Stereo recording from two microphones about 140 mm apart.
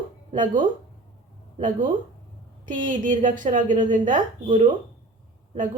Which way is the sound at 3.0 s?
70° right (ahead or behind).